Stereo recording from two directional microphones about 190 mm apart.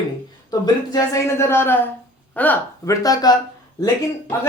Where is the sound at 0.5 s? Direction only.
20° left (ahead or behind).